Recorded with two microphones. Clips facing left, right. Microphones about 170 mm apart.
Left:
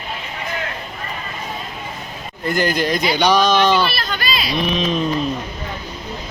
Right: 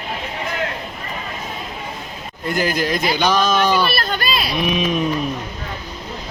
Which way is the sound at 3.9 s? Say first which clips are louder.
Right 2 dB; 50° right (ahead or behind).